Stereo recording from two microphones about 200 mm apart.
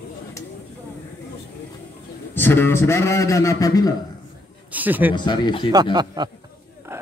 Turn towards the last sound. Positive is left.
turn(degrees=-10)  # may be behind; listen again after turning